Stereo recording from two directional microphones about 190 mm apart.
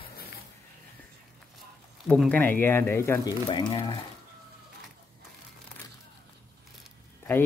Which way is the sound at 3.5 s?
25° left (ahead or behind).